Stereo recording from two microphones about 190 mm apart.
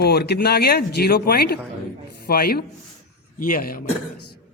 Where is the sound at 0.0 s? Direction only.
55° left (ahead or behind).